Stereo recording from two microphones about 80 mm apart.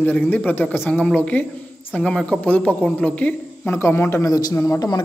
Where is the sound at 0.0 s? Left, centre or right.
Left.